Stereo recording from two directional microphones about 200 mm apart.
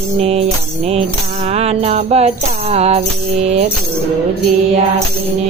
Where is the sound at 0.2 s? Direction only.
30° right (ahead or behind).